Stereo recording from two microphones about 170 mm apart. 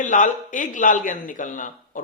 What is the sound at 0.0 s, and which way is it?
Speech, 50° left (ahead or behind).